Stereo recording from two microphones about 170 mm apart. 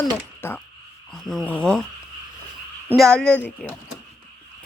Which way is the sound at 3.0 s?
5° left (ahead or behind).